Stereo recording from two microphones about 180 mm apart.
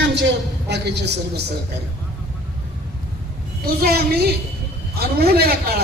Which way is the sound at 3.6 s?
60° right (ahead or behind).